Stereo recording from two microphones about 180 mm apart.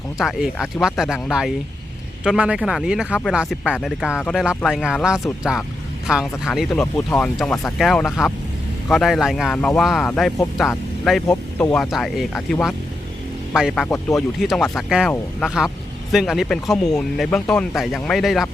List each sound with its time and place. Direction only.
0.2 s speech: 5° right (ahead or behind)
13.8 s speech: 15° left (ahead or behind)
14.3 s speech: centre (ahead or behind)